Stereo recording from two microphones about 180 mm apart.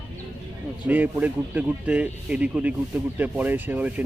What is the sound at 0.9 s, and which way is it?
Speech, 10° right (ahead or behind).